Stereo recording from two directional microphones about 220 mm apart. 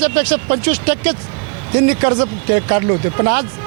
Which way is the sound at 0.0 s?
10° right (ahead or behind).